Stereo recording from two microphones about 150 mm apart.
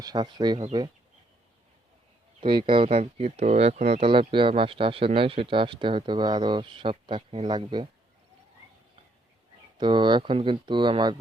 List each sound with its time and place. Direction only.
0.0 s speech: 30° right (ahead or behind)
2.4 s speech: 35° right (ahead or behind)
9.7 s speech: 30° right (ahead or behind)